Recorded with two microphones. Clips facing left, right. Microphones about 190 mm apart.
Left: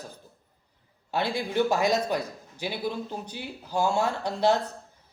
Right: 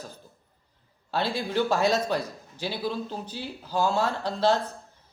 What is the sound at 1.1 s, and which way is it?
A man's voice, 15° left (ahead or behind).